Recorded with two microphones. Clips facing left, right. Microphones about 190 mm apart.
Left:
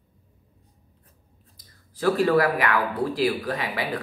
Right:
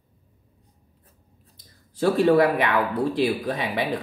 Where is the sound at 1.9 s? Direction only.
25° right (ahead or behind).